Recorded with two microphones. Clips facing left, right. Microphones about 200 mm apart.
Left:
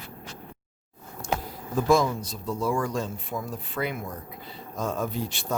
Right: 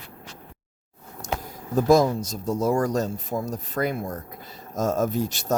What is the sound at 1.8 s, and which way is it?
Speech, 40° right (ahead or behind).